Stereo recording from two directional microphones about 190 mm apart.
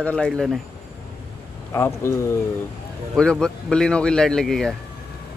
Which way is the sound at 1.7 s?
15° left (ahead or behind).